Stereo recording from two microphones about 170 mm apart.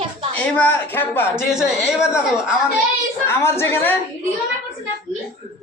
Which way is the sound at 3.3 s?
15° left (ahead or behind).